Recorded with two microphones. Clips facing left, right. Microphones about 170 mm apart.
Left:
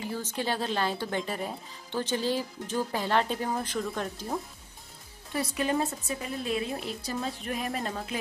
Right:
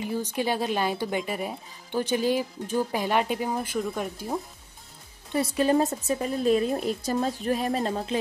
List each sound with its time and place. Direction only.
0.1 s speech: 15° right (ahead or behind)
5.3 s a woman's voice: 25° right (ahead or behind)